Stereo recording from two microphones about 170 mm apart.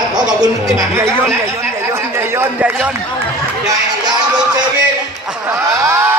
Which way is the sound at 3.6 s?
25° right (ahead or behind).